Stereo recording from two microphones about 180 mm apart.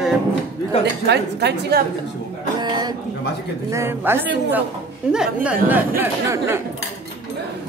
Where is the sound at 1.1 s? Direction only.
70° right (ahead or behind).